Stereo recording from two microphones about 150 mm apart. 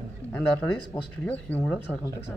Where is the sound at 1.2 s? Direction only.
10° left (ahead or behind).